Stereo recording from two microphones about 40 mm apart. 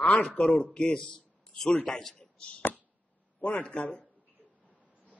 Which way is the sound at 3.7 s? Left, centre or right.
Left.